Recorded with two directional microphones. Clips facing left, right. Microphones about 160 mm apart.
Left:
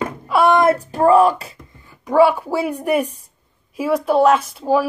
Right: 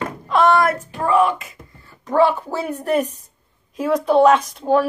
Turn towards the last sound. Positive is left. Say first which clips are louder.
# even
turn(degrees=5)  # may be behind; listen again after turning